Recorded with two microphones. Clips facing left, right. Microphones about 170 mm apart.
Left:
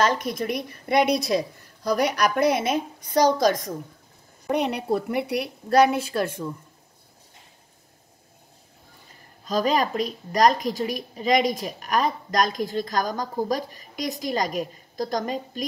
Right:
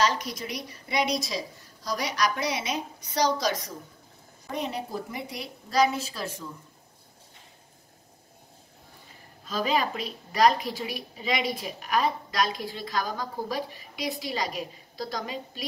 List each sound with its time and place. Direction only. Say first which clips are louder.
0.0 s a woman's voice: left 4 dB; 55° left (ahead or behind)
4.5 s a woman's voice: left 8 dB; 70° left (ahead or behind)
9.5 s a woman's voice: left 5 dB; 45° left (ahead or behind)